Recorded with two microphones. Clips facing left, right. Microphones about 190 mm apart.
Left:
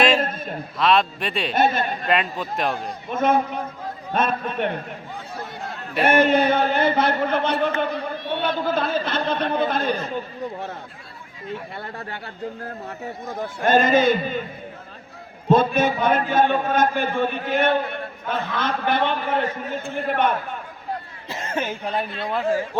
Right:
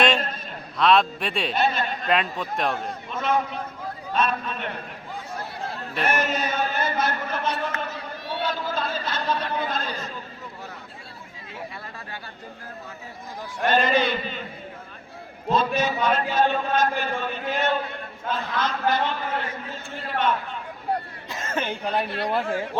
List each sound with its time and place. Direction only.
0.2 s a sound: 50° left (ahead or behind)
0.8 s a man's voice: centre (ahead or behind)
1.5 s a man's voice: 50° left (ahead or behind)
2.0 s a man's voice: centre (ahead or behind)
3.1 s a man's voice: 50° left (ahead or behind)
6.0 s a man's voice: 55° left (ahead or behind)
11.8 s a man's voice: 60° left (ahead or behind)
13.2 s a man's voice: 50° left (ahead or behind)
15.5 s a man's voice: 55° left (ahead or behind)
21.4 s speech: 10° left (ahead or behind)